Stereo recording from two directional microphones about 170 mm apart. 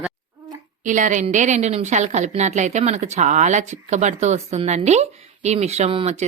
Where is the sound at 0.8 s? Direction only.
45° right (ahead or behind).